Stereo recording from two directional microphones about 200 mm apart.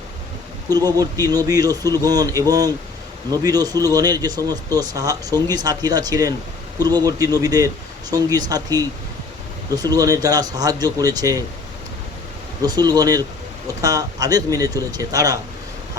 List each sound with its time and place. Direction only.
0.8 s speech: 20° right (ahead or behind)
12.6 s speech: 20° right (ahead or behind)